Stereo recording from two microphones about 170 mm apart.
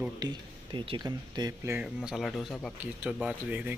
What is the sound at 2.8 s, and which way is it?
Speech, 5° right (ahead or behind).